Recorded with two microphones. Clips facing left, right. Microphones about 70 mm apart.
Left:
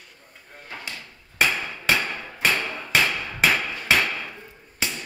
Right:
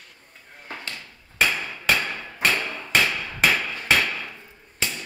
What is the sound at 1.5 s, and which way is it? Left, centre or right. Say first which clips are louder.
Hammer: even; centre.